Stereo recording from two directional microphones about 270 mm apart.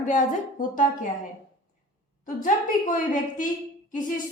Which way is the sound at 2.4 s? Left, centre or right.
Left.